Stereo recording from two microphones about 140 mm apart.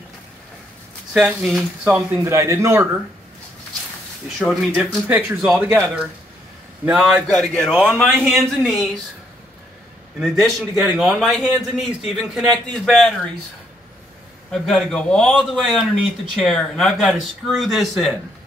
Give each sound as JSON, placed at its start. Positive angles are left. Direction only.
{"t": 1.1, "sound": "speech", "side_deg": -5}
{"t": 2.3, "sound": "speech", "side_deg": -20}
{"t": 4.4, "sound": "a man's voice", "side_deg": 0}
{"t": 5.0, "sound": "speech", "side_deg": -15}
{"t": 7.3, "sound": "a man's voice", "side_deg": 5}
{"t": 10.8, "sound": "a man's voice", "side_deg": 0}
{"t": 14.5, "sound": "a man's voice", "side_deg": 5}